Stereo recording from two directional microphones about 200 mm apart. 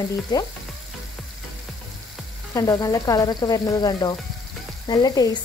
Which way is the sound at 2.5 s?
20° left (ahead or behind).